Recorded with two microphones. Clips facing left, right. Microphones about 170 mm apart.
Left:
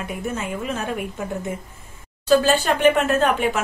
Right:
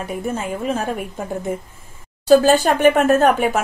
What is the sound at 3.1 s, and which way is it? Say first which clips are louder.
Speech: right 5 dB; 45° right (ahead or behind).